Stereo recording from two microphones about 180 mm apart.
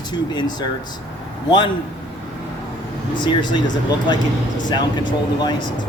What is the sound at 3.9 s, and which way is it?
Speech, 25° left (ahead or behind).